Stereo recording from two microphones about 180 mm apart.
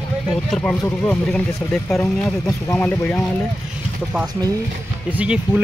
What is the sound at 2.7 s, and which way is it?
Speech, 10° left (ahead or behind).